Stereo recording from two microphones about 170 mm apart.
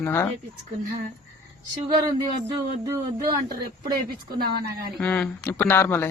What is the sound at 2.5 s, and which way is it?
Speech, 20° right (ahead or behind).